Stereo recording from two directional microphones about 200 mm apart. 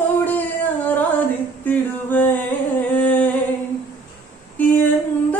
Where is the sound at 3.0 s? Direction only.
10° left (ahead or behind).